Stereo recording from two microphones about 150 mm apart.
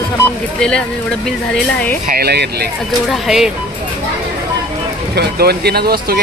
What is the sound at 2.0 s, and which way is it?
Speech, 80° right.